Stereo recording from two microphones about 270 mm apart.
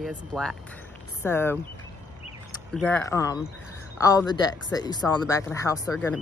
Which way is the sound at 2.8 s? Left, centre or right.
Centre.